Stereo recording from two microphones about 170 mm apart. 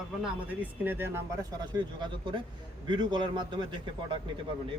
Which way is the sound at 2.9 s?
25° right (ahead or behind).